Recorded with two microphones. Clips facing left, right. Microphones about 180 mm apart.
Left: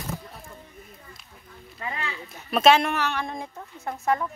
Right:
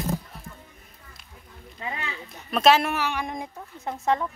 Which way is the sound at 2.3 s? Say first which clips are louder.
Left 1 dB; centre (ahead or behind).